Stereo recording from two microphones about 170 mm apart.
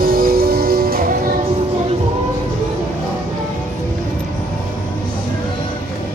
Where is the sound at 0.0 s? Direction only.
60° right (ahead or behind).